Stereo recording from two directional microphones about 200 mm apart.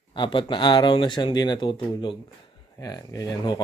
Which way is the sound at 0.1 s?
25° left (ahead or behind).